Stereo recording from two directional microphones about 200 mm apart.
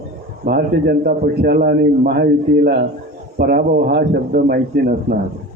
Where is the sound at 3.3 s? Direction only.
50° right (ahead or behind).